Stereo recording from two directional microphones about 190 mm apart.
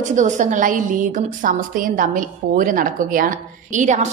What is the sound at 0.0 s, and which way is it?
A woman's voice, 40° right (ahead or behind).